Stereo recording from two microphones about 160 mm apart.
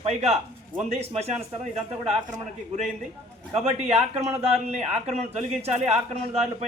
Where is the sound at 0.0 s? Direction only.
40° right (ahead or behind).